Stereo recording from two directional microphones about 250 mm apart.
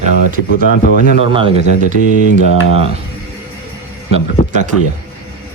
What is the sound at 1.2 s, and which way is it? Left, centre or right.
Speech, centre.